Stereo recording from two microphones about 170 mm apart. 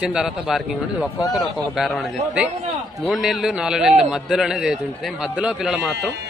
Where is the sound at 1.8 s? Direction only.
Centre (ahead or behind).